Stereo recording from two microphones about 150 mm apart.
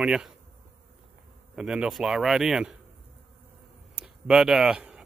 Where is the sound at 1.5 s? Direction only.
5° right (ahead or behind).